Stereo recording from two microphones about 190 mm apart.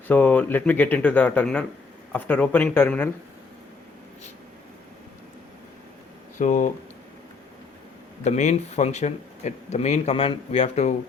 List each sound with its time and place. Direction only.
0.1 s speech: 10° left (ahead or behind)
6.4 s speech: 40° left (ahead or behind)
8.2 s speech: 35° left (ahead or behind)